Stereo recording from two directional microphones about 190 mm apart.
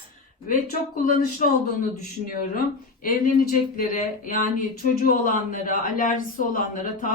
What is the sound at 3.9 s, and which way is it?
Speech, 45° left (ahead or behind).